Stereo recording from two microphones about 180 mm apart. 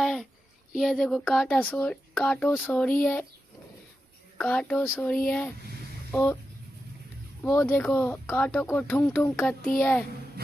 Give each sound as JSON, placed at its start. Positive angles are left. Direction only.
{"t": 0.0, "sound": "a sound", "side_deg": 0}
{"t": 0.7, "sound": "speech", "side_deg": 0}
{"t": 4.4, "sound": "speech", "side_deg": 10}
{"t": 7.4, "sound": "speech", "side_deg": 10}